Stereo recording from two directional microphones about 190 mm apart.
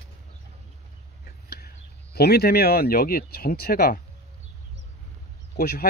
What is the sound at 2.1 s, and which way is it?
Speech, 55° left (ahead or behind).